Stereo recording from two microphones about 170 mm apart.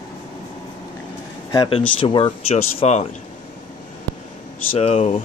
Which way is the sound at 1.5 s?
30° left (ahead or behind).